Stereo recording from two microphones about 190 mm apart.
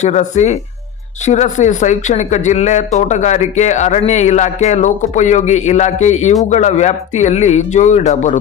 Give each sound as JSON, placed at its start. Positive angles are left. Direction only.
{"t": 0.0, "sound": "speech", "side_deg": 40}